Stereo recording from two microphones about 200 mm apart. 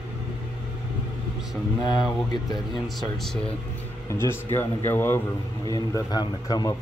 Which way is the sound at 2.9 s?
Centre (ahead or behind).